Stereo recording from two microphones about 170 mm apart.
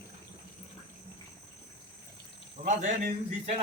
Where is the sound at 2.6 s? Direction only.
50° right (ahead or behind).